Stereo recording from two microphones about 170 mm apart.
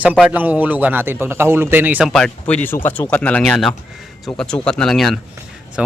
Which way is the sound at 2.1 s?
5° left (ahead or behind).